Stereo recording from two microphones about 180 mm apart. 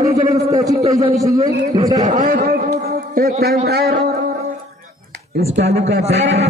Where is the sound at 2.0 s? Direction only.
45° right (ahead or behind).